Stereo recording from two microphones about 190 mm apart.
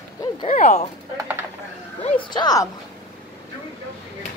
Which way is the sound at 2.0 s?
25° left (ahead or behind).